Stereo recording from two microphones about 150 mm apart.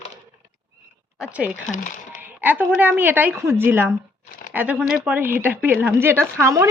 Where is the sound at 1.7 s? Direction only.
60° left (ahead or behind).